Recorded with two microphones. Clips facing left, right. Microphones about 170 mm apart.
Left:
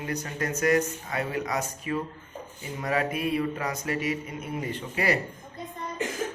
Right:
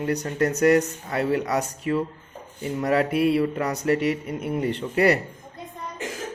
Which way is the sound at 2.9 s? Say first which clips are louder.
Right 6 dB; 70° right (ahead or behind).